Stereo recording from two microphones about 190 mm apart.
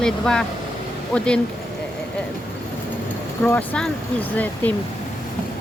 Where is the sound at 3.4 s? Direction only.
5° left (ahead or behind).